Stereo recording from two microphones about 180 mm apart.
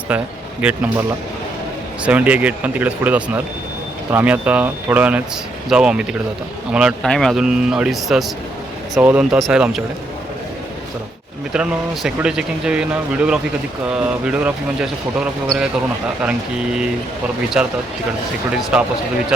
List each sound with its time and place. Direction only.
0.1 s speech: 10° right (ahead or behind)
2.0 s speech: 10° right (ahead or behind)
11.5 s speech: 5° right (ahead or behind)
18.7 s speech: 5° right (ahead or behind)